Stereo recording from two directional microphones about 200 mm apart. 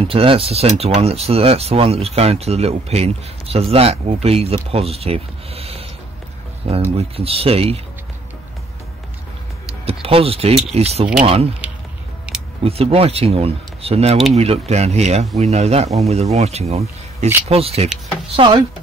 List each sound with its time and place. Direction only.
0.0 s speech: 25° right (ahead or behind)
9.8 s speech: 30° right (ahead or behind)
12.3 s a sound: 5° right (ahead or behind)
12.6 s speech: 30° right (ahead or behind)